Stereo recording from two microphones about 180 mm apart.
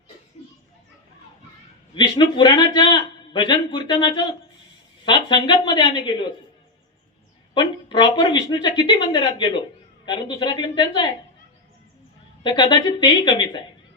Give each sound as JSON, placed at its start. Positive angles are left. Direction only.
{"t": 2.0, "sound": "a man's voice", "side_deg": 25}
{"t": 7.5, "sound": "a man's voice", "side_deg": 25}
{"t": 12.4, "sound": "a man's voice", "side_deg": 25}